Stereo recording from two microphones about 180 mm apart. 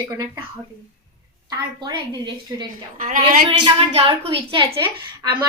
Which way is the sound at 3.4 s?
25° right (ahead or behind).